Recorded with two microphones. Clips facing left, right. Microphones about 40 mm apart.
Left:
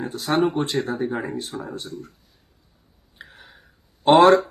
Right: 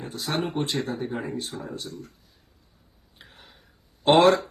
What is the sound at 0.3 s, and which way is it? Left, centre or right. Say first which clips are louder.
Speech: left 6 dB; centre.